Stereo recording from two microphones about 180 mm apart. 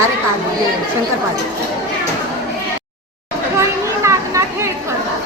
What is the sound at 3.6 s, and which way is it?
Children playing, 15° right (ahead or behind).